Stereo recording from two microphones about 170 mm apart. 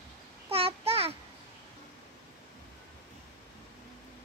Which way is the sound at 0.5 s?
35° right (ahead or behind).